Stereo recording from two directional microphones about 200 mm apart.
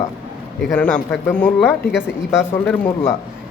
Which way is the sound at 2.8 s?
15° left (ahead or behind).